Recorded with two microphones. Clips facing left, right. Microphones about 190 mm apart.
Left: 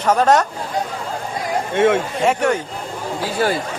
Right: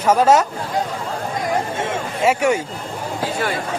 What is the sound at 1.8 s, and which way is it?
Speech, 65° left (ahead or behind).